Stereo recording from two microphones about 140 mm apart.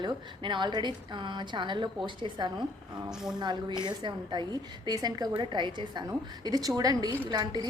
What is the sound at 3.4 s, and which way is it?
A woman's voice, 30° right (ahead or behind).